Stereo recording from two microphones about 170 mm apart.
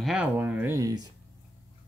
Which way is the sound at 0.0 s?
5° right (ahead or behind).